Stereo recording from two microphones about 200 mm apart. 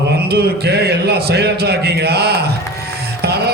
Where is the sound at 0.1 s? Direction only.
55° right (ahead or behind).